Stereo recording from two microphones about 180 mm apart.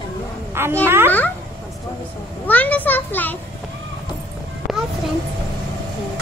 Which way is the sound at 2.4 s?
10° left (ahead or behind).